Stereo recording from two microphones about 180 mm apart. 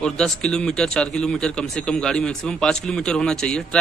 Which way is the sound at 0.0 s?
5° left (ahead or behind).